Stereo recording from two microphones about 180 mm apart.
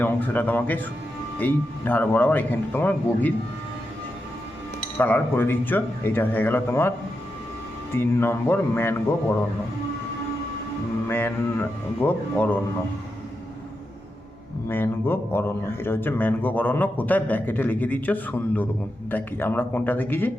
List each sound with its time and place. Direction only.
0.0 s a man's voice: 10° left (ahead or behind)
4.9 s a man's voice: 10° left (ahead or behind)
7.9 s a man's voice: 15° left (ahead or behind)
11.1 s a man's voice: 10° left (ahead or behind)
14.7 s a man's voice: 10° left (ahead or behind)